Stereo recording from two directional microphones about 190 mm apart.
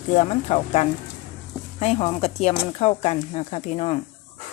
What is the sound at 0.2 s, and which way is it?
Speech, 35° left (ahead or behind).